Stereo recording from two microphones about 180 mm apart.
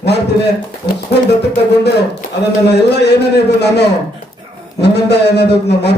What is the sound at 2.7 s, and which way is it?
A man's voice, 65° left (ahead or behind).